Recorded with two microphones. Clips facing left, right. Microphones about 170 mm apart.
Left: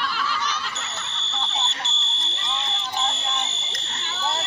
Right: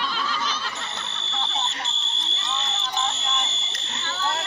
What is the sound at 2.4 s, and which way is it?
Fire alarm, 15° left (ahead or behind).